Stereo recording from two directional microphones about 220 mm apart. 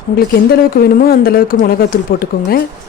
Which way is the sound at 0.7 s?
40° left (ahead or behind).